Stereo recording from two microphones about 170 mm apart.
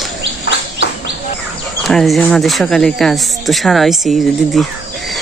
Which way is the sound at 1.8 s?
Centre (ahead or behind).